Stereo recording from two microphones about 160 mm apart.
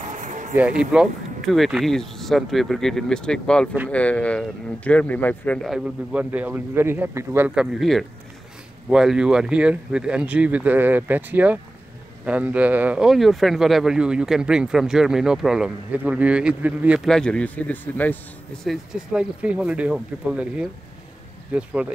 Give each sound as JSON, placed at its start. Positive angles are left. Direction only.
{"t": 0.1, "sound": "music", "side_deg": -50}
{"t": 0.6, "sound": "speech", "side_deg": -5}
{"t": 5.6, "sound": "speech", "side_deg": -5}
{"t": 18.6, "sound": "speech", "side_deg": 0}